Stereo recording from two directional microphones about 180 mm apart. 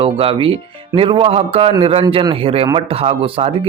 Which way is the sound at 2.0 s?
20° right (ahead or behind).